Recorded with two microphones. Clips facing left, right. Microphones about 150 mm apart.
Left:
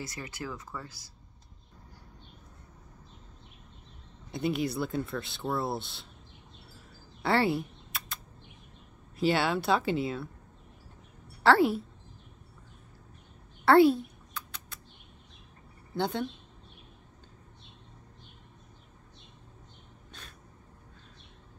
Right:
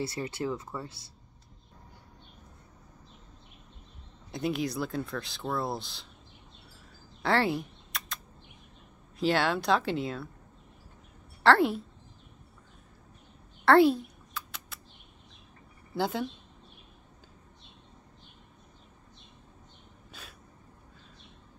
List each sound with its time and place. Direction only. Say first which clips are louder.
0.0 s speech: right 7 dB; 30° right (ahead or behind)
4.3 s speech: left 1 dB; centre (ahead or behind)
7.2 s typing: even; centre (ahead or behind)
9.2 s speech: even; centre (ahead or behind)
11.4 s speech: even; centre (ahead or behind)
13.7 s mouse: even; centre (ahead or behind)
15.9 s speech: even; 5° right (ahead or behind)
20.1 s a sound: right 1 dB; 5° right (ahead or behind)